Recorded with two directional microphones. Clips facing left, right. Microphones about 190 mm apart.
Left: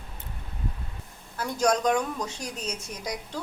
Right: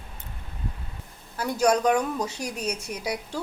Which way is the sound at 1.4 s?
10° right (ahead or behind).